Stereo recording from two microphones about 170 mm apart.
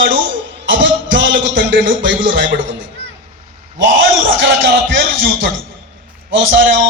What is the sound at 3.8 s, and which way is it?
Speech, 90° right.